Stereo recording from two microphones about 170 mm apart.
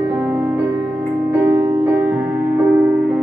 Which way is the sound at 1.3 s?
10° right (ahead or behind).